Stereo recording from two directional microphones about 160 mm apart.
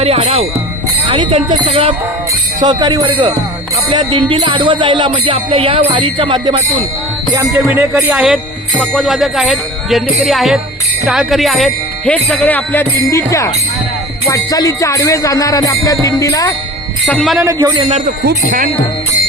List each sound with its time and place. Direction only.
1.0 s music: 30° right (ahead or behind)
2.6 s speech: 25° right (ahead or behind)
3.8 s music: 30° right (ahead or behind)
7.7 s speech: 10° right (ahead or behind); by 12.9 s 10° left (ahead or behind)
13.1 s music: 20° left (ahead or behind)
17.1 s speech: centre (ahead or behind)
17.4 s speech: 25° right (ahead or behind)